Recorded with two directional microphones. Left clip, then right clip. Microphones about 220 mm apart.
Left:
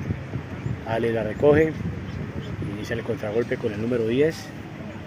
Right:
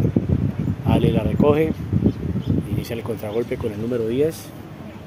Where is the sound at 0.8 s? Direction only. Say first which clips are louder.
Right 3 dB; 15° right (ahead or behind).